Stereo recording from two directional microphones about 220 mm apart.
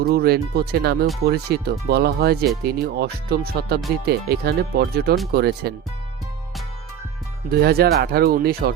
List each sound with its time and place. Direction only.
0.0 s speech: 45° right (ahead or behind)
7.6 s speech: 45° right (ahead or behind)